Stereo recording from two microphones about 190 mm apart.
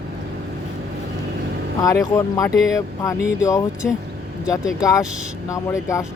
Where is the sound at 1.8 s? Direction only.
20° left (ahead or behind).